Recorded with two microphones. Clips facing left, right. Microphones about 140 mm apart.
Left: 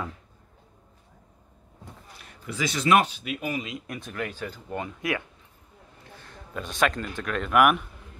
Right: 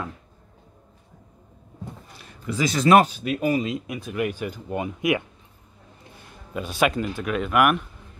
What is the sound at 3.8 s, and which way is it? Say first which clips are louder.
Speech: right 7 dB; 5° right (ahead or behind).